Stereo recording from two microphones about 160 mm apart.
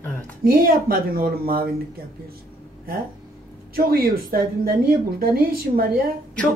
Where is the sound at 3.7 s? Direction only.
70° right (ahead or behind).